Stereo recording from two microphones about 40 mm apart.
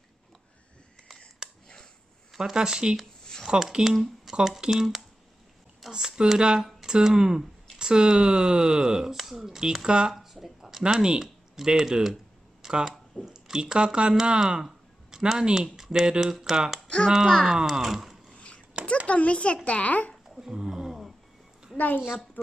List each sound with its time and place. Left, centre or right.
1.4 s a sound: centre
2.3 s speech: centre
10.1 s a sound: centre
10.9 s speech: centre
14.6 s a sound: centre
15.4 s speech: centre
16.8 s a sound: left
17.6 s speech: centre
18.3 s dog: left
19.0 s a child's voice: left
20.3 s roaring cats: centre
21.7 s a woman's voice: left